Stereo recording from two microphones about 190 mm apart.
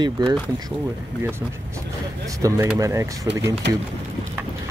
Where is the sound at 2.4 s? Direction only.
15° right (ahead or behind).